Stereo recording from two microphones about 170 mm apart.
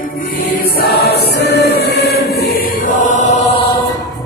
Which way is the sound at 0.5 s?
65° left (ahead or behind).